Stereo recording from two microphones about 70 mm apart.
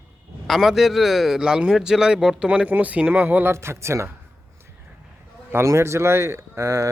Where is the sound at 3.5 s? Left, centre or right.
Right.